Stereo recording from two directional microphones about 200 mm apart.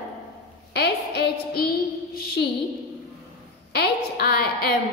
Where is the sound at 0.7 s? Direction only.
55° left (ahead or behind).